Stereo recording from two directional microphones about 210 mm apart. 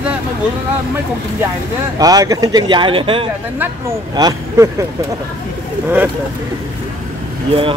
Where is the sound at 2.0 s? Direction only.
15° right (ahead or behind).